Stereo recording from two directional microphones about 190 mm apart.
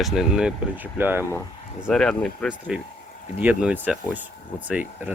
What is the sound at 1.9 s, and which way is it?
Speech, 5° left (ahead or behind).